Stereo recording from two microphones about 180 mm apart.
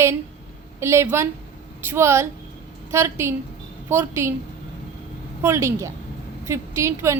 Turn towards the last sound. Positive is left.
turn(degrees=-15)  # may be behind; listen again after turning